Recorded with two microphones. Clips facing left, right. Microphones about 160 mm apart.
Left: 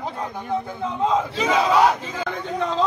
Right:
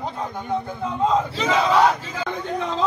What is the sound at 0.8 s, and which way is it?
Speech, centre (ahead or behind).